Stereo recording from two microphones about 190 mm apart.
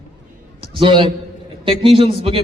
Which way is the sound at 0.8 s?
25° right (ahead or behind).